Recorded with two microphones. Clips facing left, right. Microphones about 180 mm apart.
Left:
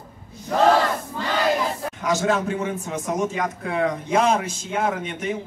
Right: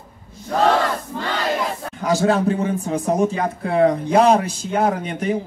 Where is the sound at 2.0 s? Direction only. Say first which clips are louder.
Right 5 dB; 35° right (ahead or behind).